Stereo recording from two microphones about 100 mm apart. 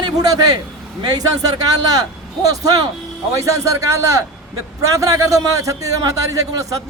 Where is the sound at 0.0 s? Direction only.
40° right (ahead or behind).